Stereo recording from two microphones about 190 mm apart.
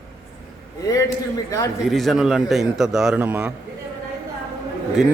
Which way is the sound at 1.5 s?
15° left (ahead or behind).